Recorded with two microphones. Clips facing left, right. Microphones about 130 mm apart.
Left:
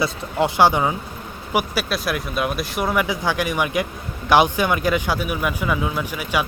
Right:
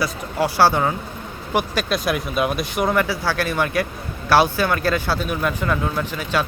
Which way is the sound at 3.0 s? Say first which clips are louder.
Even; 15° left (ahead or behind).